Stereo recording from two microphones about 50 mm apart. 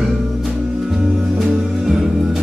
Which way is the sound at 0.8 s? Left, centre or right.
Centre.